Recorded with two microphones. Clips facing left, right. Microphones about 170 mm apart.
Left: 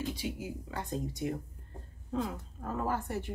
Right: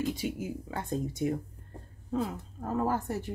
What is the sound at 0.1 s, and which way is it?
Speech, 50° right (ahead or behind).